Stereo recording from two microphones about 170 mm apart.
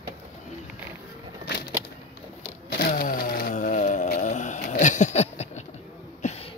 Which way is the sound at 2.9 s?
55° left (ahead or behind).